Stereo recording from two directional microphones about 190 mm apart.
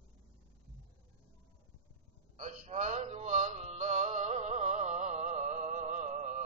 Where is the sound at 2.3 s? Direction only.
35° right (ahead or behind).